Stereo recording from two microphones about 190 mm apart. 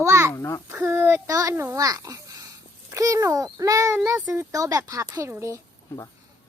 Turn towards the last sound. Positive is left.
turn(degrees=-15)  # may be behind; listen again after turning